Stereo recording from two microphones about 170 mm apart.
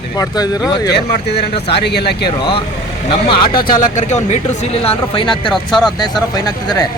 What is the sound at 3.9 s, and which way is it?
Speech, 40° left (ahead or behind).